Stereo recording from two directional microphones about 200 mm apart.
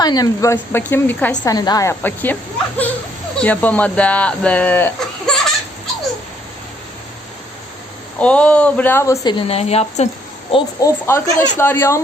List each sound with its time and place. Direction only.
0.0 s speech: 20° left (ahead or behind)
1.5 s speech: 20° left (ahead or behind); by 5.4 s 5° left (ahead or behind)
8.2 s speech: 5° left (ahead or behind)
9.5 s speech: 30° left (ahead or behind)
10.5 s speech: 15° left (ahead or behind)